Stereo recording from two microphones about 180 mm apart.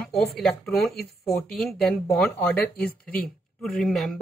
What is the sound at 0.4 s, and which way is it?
A woman's voice, 5° left (ahead or behind).